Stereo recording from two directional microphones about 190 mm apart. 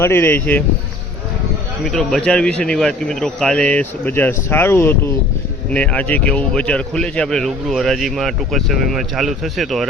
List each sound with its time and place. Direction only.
0.0 s speech: 10° left (ahead or behind)
1.8 s speech: centre (ahead or behind)